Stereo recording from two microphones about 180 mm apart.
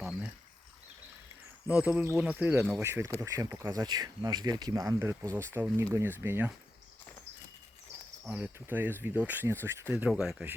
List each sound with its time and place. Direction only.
1.6 s speech: 10° right (ahead or behind)
8.3 s speech: 10° right (ahead or behind)